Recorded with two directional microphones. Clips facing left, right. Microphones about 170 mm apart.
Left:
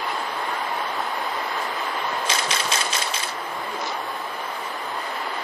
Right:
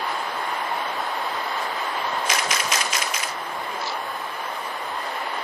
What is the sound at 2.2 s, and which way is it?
Coin, 30° left (ahead or behind).